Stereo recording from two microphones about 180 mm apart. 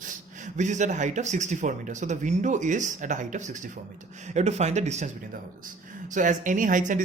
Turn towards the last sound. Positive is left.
turn(degrees=-45)  # may be behind; listen again after turning